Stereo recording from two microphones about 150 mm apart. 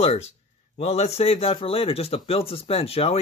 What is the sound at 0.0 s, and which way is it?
A man's voice, 45° left (ahead or behind).